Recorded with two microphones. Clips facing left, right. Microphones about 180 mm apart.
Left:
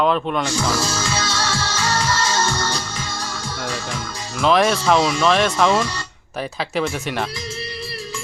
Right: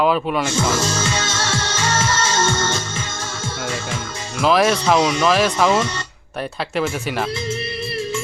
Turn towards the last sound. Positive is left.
turn(degrees=0)  # may be behind; listen again after turning